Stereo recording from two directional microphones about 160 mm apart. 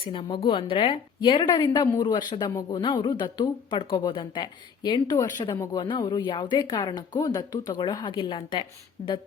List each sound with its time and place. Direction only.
0.1 s a woman's voice: 30° left (ahead or behind)